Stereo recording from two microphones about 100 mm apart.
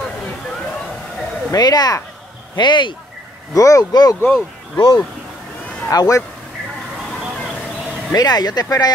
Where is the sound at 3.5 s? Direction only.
35° left (ahead or behind).